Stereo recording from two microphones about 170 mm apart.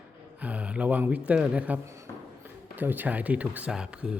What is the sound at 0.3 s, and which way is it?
Speech, 10° right (ahead or behind).